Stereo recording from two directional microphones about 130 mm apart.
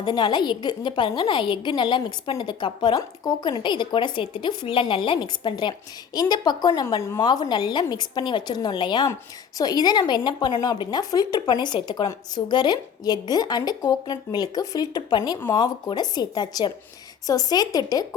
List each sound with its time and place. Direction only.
0.0 s a woman's voice: 35° left (ahead or behind)